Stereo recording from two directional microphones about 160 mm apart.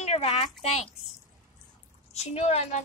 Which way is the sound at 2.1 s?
40° left (ahead or behind).